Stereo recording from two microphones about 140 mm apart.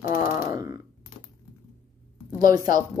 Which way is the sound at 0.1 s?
20° right (ahead or behind).